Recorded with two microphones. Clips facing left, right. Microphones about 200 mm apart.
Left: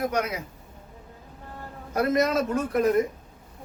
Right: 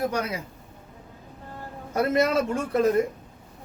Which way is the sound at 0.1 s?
30° right (ahead or behind).